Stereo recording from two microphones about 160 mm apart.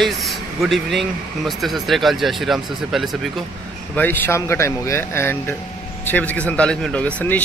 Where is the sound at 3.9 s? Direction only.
10° left (ahead or behind).